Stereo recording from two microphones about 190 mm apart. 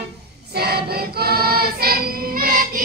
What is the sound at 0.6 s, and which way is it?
Choir, 55° right (ahead or behind).